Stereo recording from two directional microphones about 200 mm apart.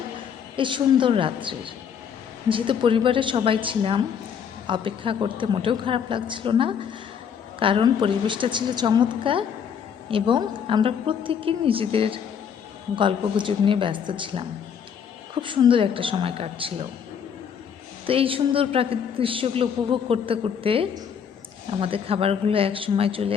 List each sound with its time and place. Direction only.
0.5 s a woman's voice: 25° right (ahead or behind)
18.0 s a woman's voice: 30° right (ahead or behind)